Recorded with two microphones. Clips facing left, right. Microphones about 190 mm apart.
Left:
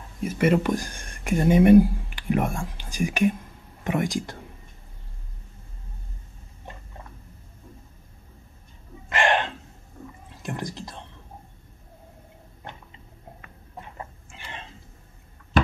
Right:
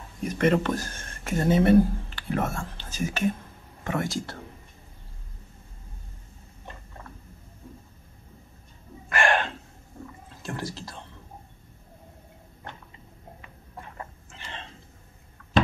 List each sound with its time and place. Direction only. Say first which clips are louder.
0.2 s speech: left 1 dB; 5° left (ahead or behind)
9.1 s a sound: left 1 dB; 20° left (ahead or behind)
10.4 s whispering: left 2 dB; 15° left (ahead or behind)